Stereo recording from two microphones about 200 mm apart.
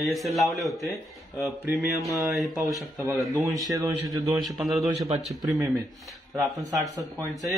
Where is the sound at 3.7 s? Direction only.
15° right (ahead or behind).